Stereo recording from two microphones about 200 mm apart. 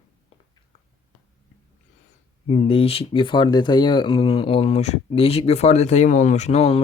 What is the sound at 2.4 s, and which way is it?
Speech, 30° left (ahead or behind).